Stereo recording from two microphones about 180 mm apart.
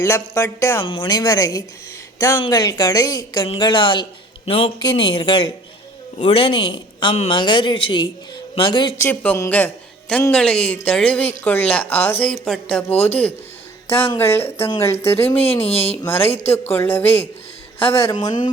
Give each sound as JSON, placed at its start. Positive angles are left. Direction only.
{"t": 0.0, "sound": "a man's voice", "side_deg": 15}
{"t": 0.9, "sound": "a man's voice", "side_deg": 25}
{"t": 9.0, "sound": "a man's voice", "side_deg": 10}
{"t": 15.6, "sound": "speech", "side_deg": 35}
{"t": 16.0, "sound": "a man's voice", "side_deg": 10}